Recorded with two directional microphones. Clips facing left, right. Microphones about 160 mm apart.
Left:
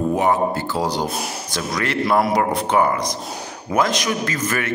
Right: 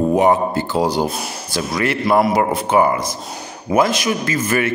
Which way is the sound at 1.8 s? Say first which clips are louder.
Right 3 dB; 5° right (ahead or behind).